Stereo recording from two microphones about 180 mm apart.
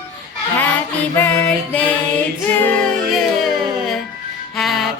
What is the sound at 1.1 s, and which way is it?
Music, 10° left (ahead or behind).